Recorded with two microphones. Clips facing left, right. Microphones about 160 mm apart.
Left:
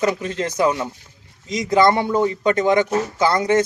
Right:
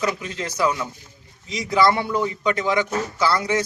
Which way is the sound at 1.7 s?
45° left (ahead or behind).